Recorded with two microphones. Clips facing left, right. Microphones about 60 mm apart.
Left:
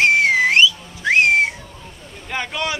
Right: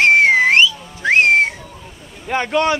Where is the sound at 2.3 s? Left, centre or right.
Right.